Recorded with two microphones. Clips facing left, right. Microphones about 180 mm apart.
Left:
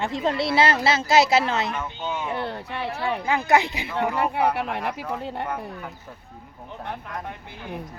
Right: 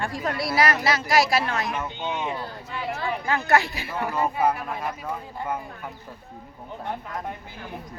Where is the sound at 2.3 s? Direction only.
70° left (ahead or behind).